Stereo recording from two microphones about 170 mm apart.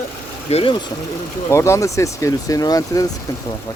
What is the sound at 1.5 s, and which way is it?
Speech, 15° left (ahead or behind).